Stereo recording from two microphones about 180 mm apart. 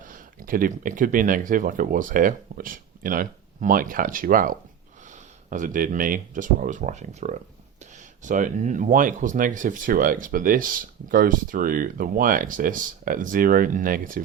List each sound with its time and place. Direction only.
0.0 s speech: 50° right (ahead or behind)